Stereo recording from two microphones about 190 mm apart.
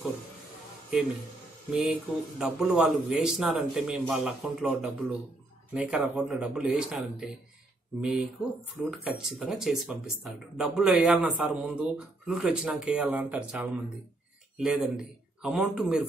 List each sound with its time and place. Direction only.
1.7 s speech: 5° right (ahead or behind)